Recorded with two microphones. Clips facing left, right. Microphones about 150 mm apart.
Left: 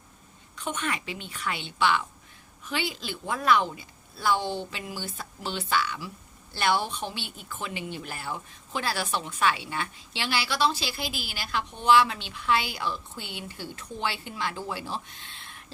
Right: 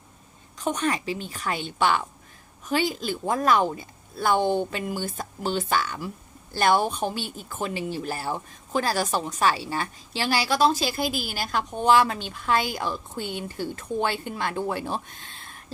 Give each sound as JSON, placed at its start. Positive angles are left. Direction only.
{"t": 0.5, "sound": "a woman's voice", "side_deg": -40}